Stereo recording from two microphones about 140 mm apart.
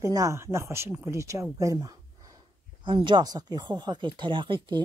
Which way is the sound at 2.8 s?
35° right (ahead or behind).